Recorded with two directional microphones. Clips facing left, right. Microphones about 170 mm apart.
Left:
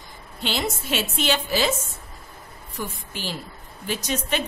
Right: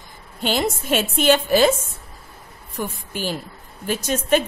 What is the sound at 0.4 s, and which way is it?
A woman's voice, 50° right (ahead or behind).